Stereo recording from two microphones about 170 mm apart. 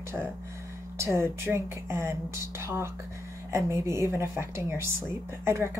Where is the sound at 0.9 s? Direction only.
15° right (ahead or behind).